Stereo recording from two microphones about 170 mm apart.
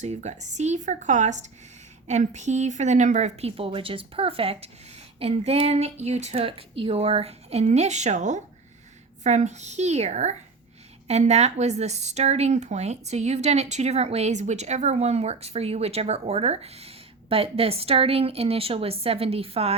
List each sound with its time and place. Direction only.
0.0 s a woman's voice: 40° right (ahead or behind)